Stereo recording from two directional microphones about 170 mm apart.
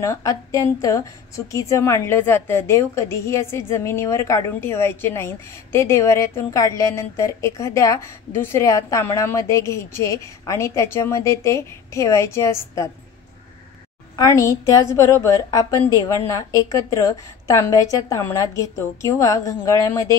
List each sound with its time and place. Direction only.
0.0 s a woman's voice: 20° left (ahead or behind)
14.1 s a woman's voice: 20° left (ahead or behind)